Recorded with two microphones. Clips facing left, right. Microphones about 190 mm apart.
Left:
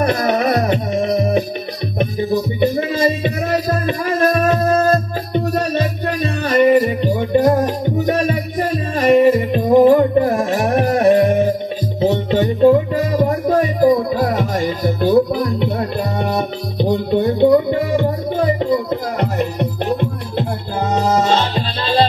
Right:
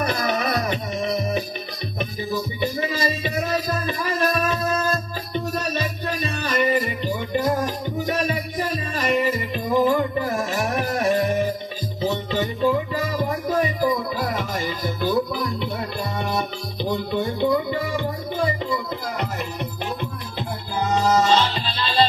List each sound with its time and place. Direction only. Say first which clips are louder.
0.3 s music: left 8 dB; 55° left (ahead or behind)
2.6 s music: left 8 dB; 60° left (ahead or behind)